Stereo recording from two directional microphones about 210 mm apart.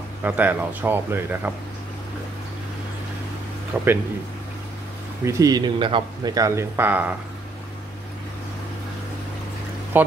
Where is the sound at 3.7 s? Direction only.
10° right (ahead or behind).